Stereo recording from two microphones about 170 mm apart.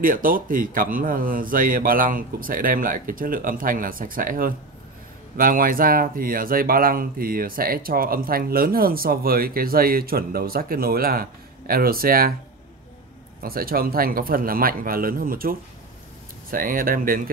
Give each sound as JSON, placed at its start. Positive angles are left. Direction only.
{"t": 0.0, "sound": "speech", "side_deg": -55}
{"t": 13.4, "sound": "speech", "side_deg": -60}